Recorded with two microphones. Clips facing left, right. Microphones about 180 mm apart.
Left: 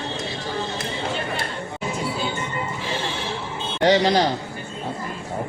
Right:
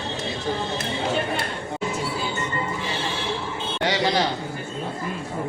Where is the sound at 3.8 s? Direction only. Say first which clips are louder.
Left 6 dB; 40° left (ahead or behind).